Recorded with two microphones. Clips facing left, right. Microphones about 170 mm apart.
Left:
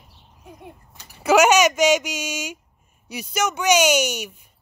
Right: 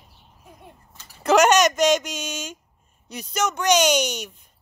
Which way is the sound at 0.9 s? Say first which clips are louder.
Left 1 dB; 10° left (ahead or behind).